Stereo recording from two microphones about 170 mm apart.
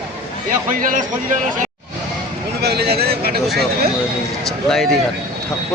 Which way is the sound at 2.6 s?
70° right (ahead or behind).